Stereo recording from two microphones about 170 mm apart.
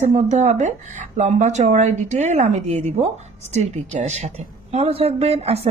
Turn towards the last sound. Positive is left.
turn(degrees=-35)  # may be behind; listen again after turning